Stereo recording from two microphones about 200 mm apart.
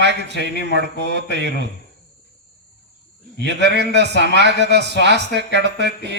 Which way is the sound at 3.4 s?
60° right (ahead or behind).